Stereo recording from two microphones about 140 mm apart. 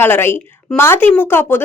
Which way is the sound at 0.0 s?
15° left (ahead or behind).